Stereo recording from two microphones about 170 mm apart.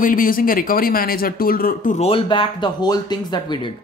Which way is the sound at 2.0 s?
30° left (ahead or behind).